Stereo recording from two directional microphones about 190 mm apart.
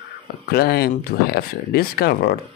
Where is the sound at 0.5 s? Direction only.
55° left (ahead or behind).